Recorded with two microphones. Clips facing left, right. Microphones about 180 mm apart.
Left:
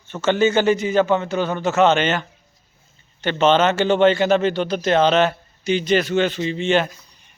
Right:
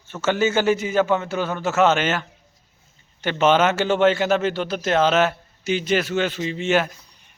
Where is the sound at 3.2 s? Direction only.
10° right (ahead or behind).